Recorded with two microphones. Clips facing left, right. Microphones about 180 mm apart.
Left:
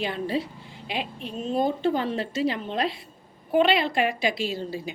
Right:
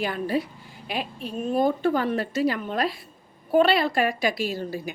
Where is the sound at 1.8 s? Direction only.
25° left (ahead or behind).